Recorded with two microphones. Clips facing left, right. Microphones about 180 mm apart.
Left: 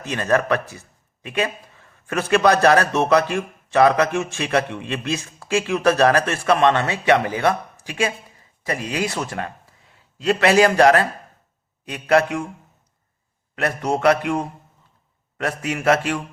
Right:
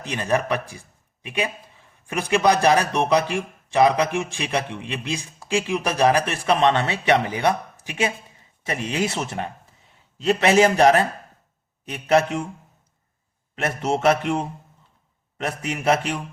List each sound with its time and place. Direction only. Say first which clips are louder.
0.0 s a man's voice: left 3 dB; 15° right (ahead or behind)
12.0 s speech: left 1 dB; 25° right (ahead or behind)
13.7 s speech: left 1 dB; 25° right (ahead or behind)
15.4 s speech: left 3 dB; 20° right (ahead or behind)